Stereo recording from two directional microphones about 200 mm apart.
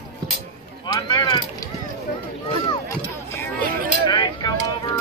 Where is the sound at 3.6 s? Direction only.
45° right (ahead or behind).